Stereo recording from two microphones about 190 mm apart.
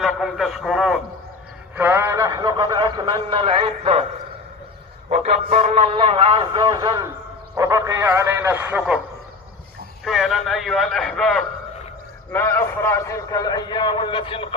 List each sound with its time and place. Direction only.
0.0 s a man's voice: centre (ahead or behind); by 4.0 s 30° right (ahead or behind)
5.0 s a sound: 35° right (ahead or behind)
5.9 s a man's voice: 30° right (ahead or behind); by 9.0 s 10° right (ahead or behind)
10.0 s a man's voice: centre (ahead or behind); by 14.5 s 30° left (ahead or behind)